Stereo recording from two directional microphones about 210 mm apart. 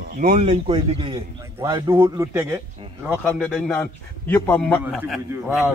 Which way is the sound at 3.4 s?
5° left (ahead or behind).